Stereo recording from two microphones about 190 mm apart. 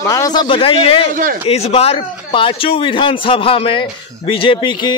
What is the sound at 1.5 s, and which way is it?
A man's voice, 35° left (ahead or behind).